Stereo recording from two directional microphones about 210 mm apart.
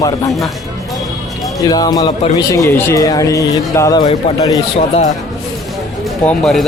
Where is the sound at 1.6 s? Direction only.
20° left (ahead or behind).